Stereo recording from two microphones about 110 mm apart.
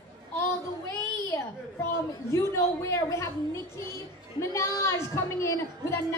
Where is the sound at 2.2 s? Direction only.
25° left (ahead or behind).